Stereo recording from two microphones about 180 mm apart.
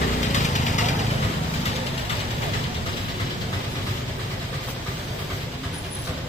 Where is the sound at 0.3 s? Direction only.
40° left (ahead or behind).